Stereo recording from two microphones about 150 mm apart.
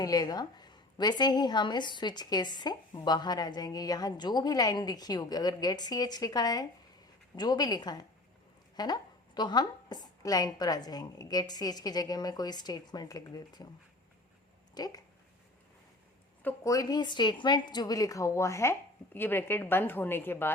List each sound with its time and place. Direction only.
0.0 s a woman's voice: 25° left (ahead or behind)
14.8 s a woman's voice: 25° left (ahead or behind)
16.4 s a woman's voice: 15° left (ahead or behind)